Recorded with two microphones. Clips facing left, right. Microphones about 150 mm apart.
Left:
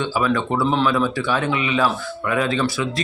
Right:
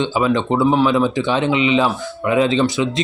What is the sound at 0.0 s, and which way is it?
Speech, 20° right (ahead or behind).